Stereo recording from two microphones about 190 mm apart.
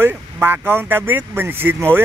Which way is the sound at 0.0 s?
10° right (ahead or behind).